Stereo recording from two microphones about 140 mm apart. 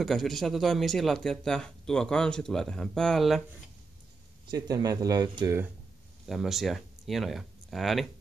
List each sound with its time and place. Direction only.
0.0 s speech: centre (ahead or behind)
4.5 s speech: 25° right (ahead or behind)
6.2 s speech: centre (ahead or behind)